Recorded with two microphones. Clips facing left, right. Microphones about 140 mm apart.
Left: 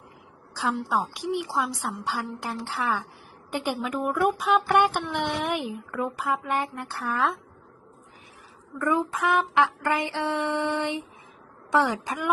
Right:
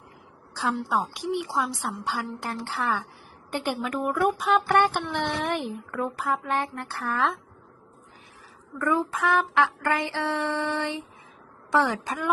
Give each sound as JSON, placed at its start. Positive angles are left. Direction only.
{"t": 0.5, "sound": "a woman's voice", "side_deg": 0}
{"t": 5.6, "sound": "a woman's voice", "side_deg": 0}
{"t": 8.8, "sound": "a sound", "side_deg": 20}
{"t": 11.7, "sound": "speech", "side_deg": 20}